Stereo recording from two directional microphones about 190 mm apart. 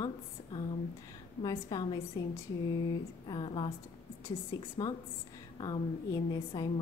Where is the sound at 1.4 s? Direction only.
20° left (ahead or behind).